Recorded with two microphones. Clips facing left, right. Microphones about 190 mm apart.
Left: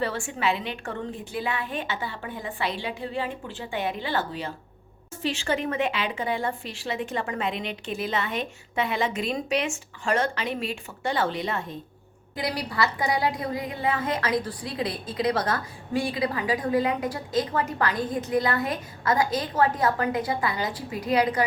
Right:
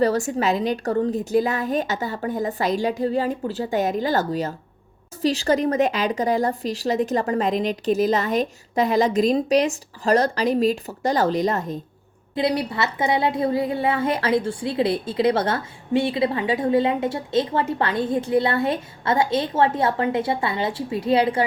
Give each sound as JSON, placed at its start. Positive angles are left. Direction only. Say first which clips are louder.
{"t": 0.0, "sound": "a woman's voice", "louder": "right 7 dB", "side_deg": -40}
{"t": 12.3, "sound": "a woman's voice", "louder": "right 8 dB", "side_deg": -25}